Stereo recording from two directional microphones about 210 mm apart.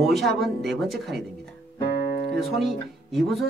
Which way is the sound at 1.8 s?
50° left (ahead or behind).